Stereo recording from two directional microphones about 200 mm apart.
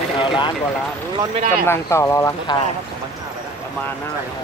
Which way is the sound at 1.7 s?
15° left (ahead or behind).